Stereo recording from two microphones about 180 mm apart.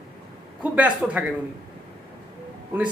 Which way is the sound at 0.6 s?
10° right (ahead or behind).